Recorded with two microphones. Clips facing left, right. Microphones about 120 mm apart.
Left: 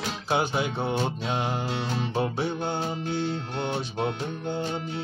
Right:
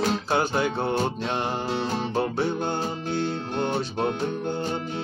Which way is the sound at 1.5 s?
40° right (ahead or behind).